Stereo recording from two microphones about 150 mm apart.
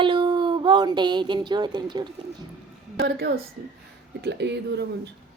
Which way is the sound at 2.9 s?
90° right.